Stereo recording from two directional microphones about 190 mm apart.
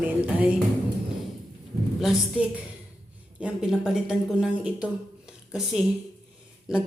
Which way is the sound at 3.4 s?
5° right (ahead or behind).